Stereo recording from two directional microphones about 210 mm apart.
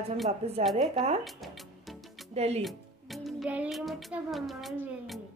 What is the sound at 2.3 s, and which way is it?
Speech, 30° right (ahead or behind).